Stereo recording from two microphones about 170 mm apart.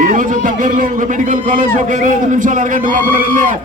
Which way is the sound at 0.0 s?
50° right (ahead or behind).